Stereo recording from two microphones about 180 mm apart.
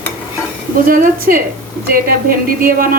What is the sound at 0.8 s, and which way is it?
A woman's voice, 50° right (ahead or behind).